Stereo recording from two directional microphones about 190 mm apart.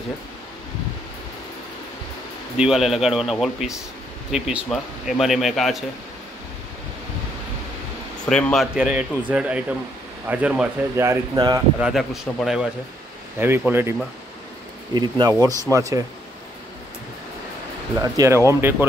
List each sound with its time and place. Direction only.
2.5 s speech: 5° right (ahead or behind)
8.3 s speech: 5° left (ahead or behind); by 11.6 s 20° right (ahead or behind)
11.8 s speech: centre (ahead or behind)
15.0 s speech: 20° right (ahead or behind)
18.0 s speech: 15° right (ahead or behind)